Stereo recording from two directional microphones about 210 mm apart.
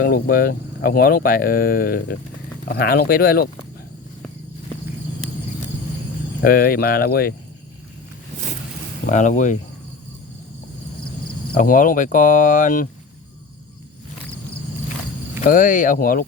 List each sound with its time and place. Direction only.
0.0 s speech: 45° left (ahead or behind)
6.4 s speech: 45° left (ahead or behind)
9.0 s speech: 35° left (ahead or behind)
11.5 s speech: 40° left (ahead or behind)
15.4 s speech: 40° left (ahead or behind)